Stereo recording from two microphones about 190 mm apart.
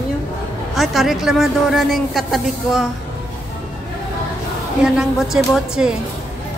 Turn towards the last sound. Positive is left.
turn(degrees=-5)  # may be behind; listen again after turning